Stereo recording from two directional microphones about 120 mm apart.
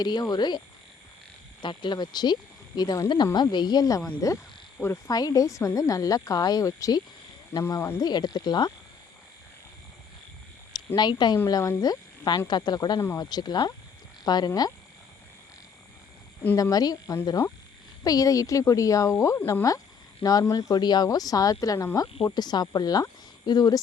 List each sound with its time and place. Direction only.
0.0 s speech: 35° left (ahead or behind)
1.6 s a woman's voice: 40° left (ahead or behind); by 7.7 s 20° left (ahead or behind)
7.9 s speech: 35° left (ahead or behind)
10.7 s speech: 35° left (ahead or behind)
16.6 s a woman's voice: 30° left (ahead or behind)